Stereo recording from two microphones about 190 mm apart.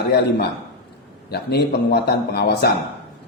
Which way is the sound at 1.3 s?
55° left (ahead or behind).